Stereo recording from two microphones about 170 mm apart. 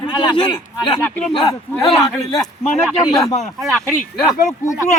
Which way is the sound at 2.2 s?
25° left (ahead or behind).